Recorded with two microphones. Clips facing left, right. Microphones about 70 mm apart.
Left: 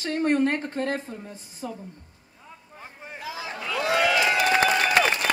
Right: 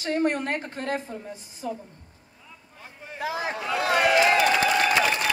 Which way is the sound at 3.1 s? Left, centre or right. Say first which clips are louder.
Right 6 dB; right.